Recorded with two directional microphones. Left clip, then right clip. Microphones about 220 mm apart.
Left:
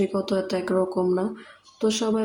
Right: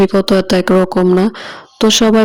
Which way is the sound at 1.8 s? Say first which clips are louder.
Right 13 dB; 40° right (ahead or behind).